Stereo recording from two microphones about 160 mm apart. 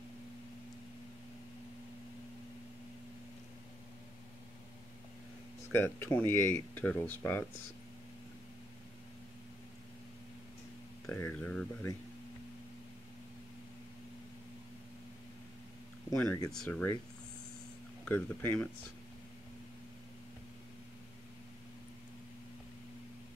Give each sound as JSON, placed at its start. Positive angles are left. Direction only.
{"t": 5.7, "sound": "speech", "side_deg": 15}
{"t": 11.1, "sound": "speech", "side_deg": 10}
{"t": 16.1, "sound": "speech", "side_deg": 15}
{"t": 18.0, "sound": "speech", "side_deg": 15}